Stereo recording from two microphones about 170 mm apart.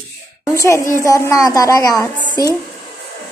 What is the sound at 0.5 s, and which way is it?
A woman's voice, 20° left (ahead or behind).